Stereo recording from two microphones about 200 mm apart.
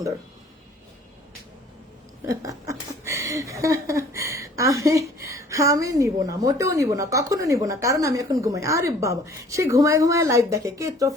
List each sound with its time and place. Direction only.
2.2 s speech: 15° right (ahead or behind)